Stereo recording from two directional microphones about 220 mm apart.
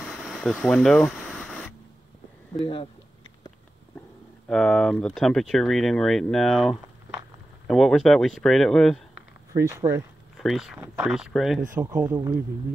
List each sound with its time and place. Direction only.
0.0 s a sound: centre (ahead or behind)
2.6 s speech: 25° left (ahead or behind)
4.5 s speech: 5° left (ahead or behind)
9.5 s speech: 10° right (ahead or behind)
10.3 s speech: centre (ahead or behind)